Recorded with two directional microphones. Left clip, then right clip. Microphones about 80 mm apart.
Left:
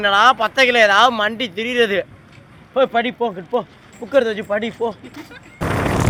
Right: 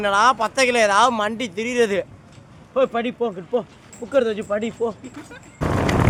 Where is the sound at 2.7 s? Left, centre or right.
Centre.